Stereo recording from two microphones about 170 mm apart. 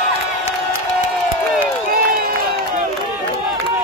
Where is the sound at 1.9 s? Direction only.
55° right (ahead or behind).